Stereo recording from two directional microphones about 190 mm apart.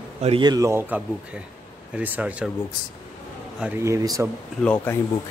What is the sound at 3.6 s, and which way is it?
Speech, 10° right (ahead or behind).